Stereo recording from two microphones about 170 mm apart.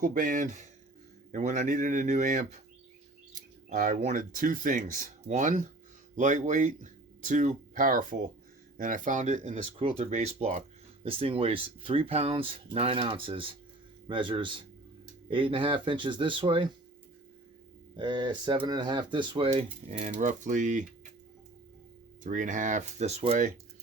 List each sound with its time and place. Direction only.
0.0 s speech: 50° right (ahead or behind)
3.7 s speech: 50° right (ahead or behind); by 16.6 s 30° right (ahead or behind)
17.9 s speech: 25° right (ahead or behind)
19.9 s speech: 45° right (ahead or behind)
22.2 s speech: 50° right (ahead or behind)